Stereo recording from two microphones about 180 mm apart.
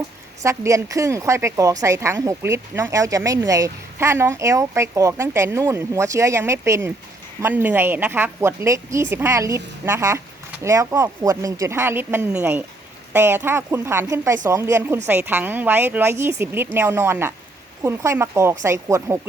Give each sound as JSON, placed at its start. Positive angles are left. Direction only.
{"t": 0.4, "sound": "a woman's voice", "side_deg": -15}